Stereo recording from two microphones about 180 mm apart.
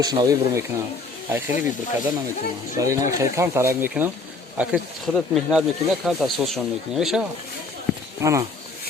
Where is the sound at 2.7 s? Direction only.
20° right (ahead or behind); by 7.3 s centre (ahead or behind).